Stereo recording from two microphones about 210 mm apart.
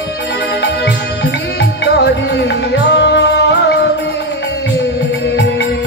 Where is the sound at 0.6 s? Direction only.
55° left (ahead or behind).